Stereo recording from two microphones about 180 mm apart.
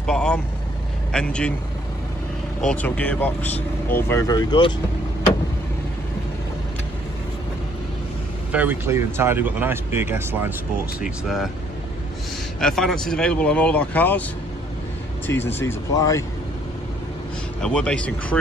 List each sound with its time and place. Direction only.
0.0 s vehicle: 5° left (ahead or behind)
1.1 s speech: 5° left (ahead or behind)
2.6 s speech: 10° left (ahead or behind); by 4.7 s 25° left (ahead or behind)
8.5 s speech: 10° right (ahead or behind)
12.5 s speech: 5° left (ahead or behind)
15.3 s speech: 15° left (ahead or behind)
17.6 s speech: 5° left (ahead or behind)